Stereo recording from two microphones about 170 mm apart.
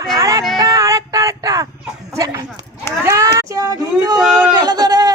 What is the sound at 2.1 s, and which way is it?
Speech, 20° right (ahead or behind).